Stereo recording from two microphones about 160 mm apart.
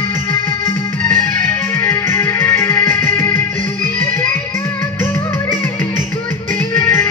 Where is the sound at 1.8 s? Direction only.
15° left (ahead or behind).